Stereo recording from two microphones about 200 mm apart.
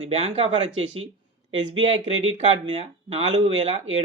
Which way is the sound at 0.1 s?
30° right (ahead or behind).